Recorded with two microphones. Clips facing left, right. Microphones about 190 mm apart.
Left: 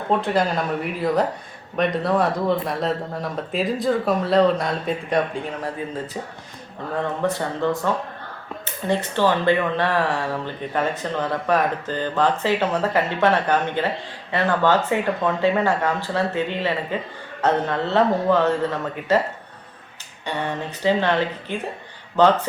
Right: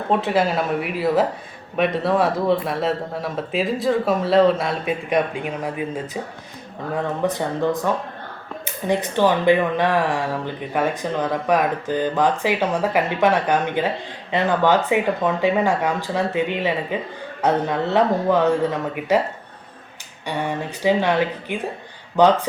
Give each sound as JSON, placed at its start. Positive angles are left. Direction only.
{"t": 0.2, "sound": "speech", "side_deg": -5}
{"t": 5.0, "sound": "speech", "side_deg": -15}
{"t": 7.2, "sound": "speech", "side_deg": -15}
{"t": 20.2, "sound": "speech", "side_deg": -10}